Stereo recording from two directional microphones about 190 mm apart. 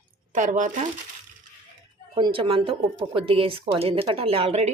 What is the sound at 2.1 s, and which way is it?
Speech, 25° right (ahead or behind).